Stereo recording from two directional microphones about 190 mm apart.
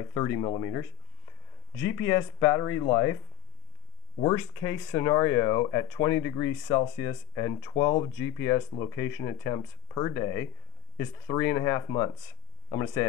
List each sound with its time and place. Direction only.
0.0 s speech: 20° left (ahead or behind)
4.2 s speech: 15° left (ahead or behind)